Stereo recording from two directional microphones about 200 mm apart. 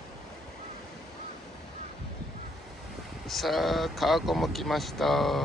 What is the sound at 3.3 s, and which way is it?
Speech, centre (ahead or behind).